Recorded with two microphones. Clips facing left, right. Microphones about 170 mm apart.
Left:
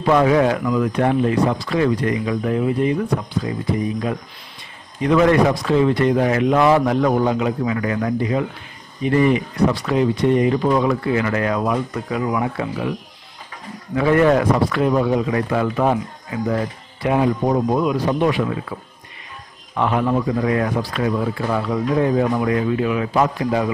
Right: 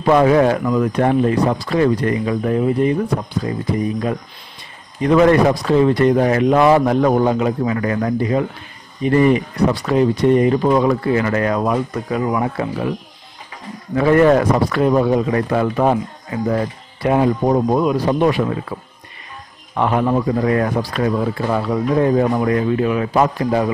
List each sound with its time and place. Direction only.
0.1 s speech: 40° right (ahead or behind)
5.0 s speech: 40° right (ahead or behind)
13.9 s speech: 40° right (ahead or behind)